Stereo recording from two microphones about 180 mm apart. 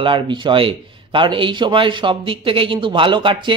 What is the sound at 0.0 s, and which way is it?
Speech, 25° right (ahead or behind).